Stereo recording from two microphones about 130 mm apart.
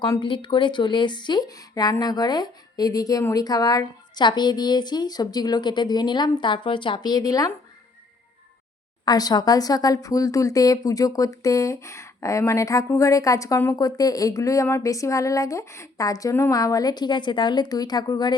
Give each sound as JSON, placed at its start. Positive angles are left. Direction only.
{"t": 0.0, "sound": "speech", "side_deg": 35}
{"t": 9.0, "sound": "speech", "side_deg": 30}